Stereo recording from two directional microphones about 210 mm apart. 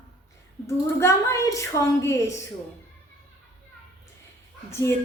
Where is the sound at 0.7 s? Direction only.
15° left (ahead or behind).